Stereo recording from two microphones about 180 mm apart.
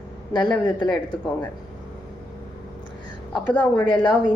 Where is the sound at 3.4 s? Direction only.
5° left (ahead or behind).